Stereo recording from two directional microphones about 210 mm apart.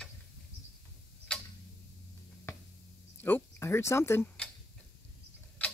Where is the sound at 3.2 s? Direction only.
10° left (ahead or behind).